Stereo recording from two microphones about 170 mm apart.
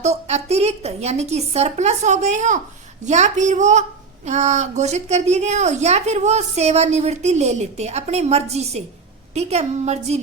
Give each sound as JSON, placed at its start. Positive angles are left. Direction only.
{"t": 0.0, "sound": "a woman's voice", "side_deg": -40}